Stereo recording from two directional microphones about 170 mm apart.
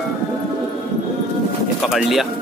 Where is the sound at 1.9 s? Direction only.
Centre (ahead or behind).